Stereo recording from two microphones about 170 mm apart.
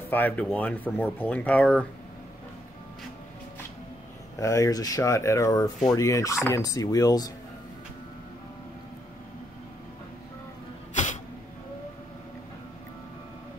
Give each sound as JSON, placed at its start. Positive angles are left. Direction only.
{"t": 0.1, "sound": "speech", "side_deg": 10}
{"t": 4.4, "sound": "speech", "side_deg": 20}